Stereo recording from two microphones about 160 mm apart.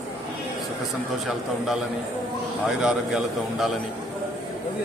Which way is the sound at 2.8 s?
5° right (ahead or behind).